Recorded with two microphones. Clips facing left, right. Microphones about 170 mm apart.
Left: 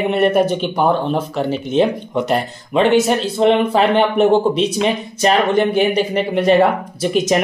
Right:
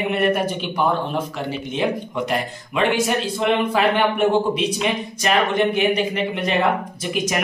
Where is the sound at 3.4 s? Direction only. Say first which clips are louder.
Left 6 dB; 30° left (ahead or behind).